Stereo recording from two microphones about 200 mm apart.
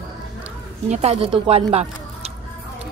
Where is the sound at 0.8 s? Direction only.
35° right (ahead or behind).